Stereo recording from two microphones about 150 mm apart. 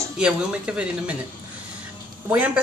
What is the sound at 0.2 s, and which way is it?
Speech, 5° right (ahead or behind).